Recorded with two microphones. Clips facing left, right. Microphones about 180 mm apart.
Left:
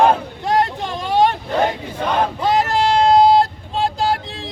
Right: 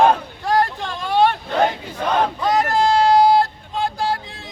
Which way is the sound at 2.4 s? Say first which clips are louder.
Left 2 dB; 25° left (ahead or behind).